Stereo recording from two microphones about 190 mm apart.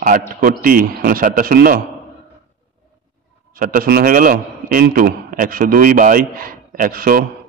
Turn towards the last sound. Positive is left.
turn(degrees=-45)  # may be behind; listen again after turning